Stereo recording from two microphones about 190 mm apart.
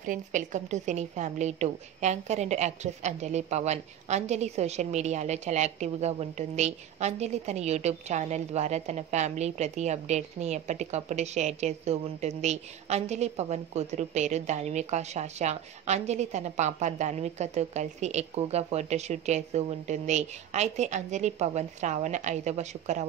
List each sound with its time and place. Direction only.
0.0 s a woman's voice: 40° right (ahead or behind)